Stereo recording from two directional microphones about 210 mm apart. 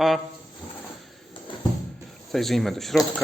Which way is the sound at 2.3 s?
Centre (ahead or behind).